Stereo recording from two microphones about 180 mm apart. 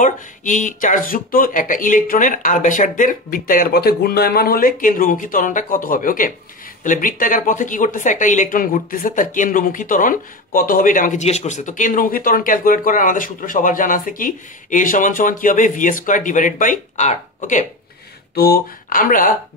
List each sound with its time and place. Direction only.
0.0 s speech: 45° left (ahead or behind)
18.3 s speech: 60° left (ahead or behind)